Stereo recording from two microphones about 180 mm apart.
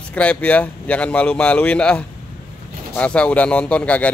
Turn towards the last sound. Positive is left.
turn(degrees=5)  # may be behind; listen again after turning